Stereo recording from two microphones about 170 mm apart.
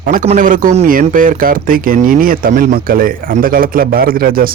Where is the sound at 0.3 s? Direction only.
50° right (ahead or behind).